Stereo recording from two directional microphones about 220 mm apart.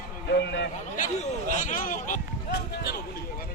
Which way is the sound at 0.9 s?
35° left (ahead or behind).